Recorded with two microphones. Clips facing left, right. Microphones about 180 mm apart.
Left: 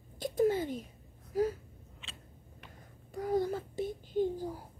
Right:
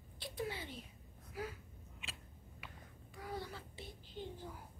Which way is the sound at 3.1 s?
45° left (ahead or behind).